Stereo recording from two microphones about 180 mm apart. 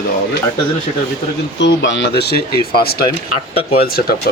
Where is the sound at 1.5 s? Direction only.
85° left.